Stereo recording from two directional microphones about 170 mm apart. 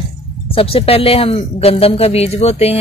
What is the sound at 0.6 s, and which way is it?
A woman's voice, 35° left (ahead or behind).